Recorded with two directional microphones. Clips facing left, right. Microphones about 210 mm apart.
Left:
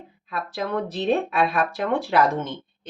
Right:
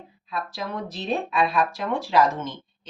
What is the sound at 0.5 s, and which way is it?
Speech, 55° left (ahead or behind).